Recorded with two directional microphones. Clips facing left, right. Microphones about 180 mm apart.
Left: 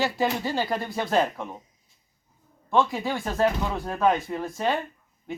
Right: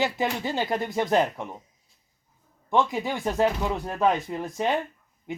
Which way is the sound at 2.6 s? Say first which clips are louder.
Left 1 dB; 20° right (ahead or behind).